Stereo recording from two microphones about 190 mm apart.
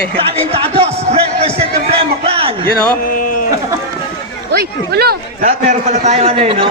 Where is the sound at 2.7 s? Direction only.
45° left (ahead or behind).